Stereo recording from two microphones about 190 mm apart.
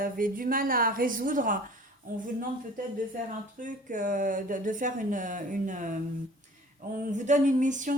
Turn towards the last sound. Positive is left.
turn(degrees=-40)  # may be behind; listen again after turning